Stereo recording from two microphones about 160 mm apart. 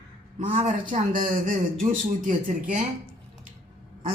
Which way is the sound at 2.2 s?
55° right (ahead or behind).